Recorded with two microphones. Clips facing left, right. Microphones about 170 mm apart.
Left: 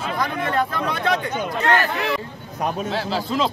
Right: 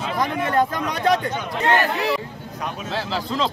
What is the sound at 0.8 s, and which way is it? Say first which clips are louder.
Speech: right 2 dB; 40° right (ahead or behind).